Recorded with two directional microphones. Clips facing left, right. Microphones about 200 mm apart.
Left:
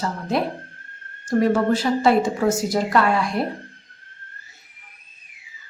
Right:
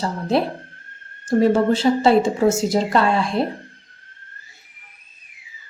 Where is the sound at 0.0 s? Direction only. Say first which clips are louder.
Right 3 dB; 30° right (ahead or behind).